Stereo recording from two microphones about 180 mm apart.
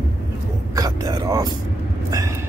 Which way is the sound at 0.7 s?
20° right (ahead or behind).